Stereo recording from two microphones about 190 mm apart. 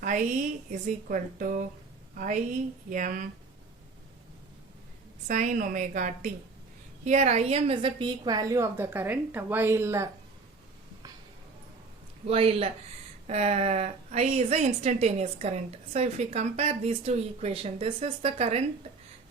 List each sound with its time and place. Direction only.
0.0 s a sound: 45° right (ahead or behind)
0.7 s a woman's voice: 45° right (ahead or behind)
5.3 s a woman's voice: 40° right (ahead or behind); by 10.1 s 15° right (ahead or behind)
12.3 s a woman's voice: 30° right (ahead or behind)